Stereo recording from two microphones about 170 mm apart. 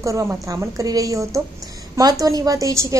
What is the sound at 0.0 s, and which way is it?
A woman's voice, 15° right (ahead or behind).